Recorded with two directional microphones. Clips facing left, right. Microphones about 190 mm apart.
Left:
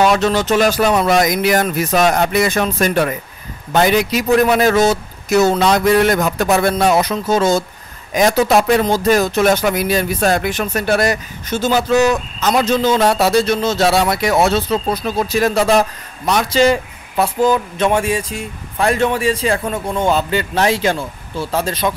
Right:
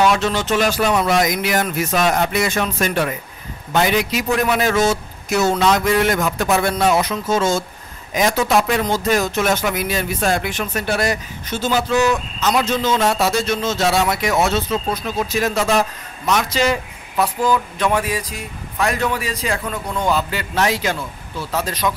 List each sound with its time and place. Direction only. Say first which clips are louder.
0.0 s speech: left 3 dB; 40° left (ahead or behind)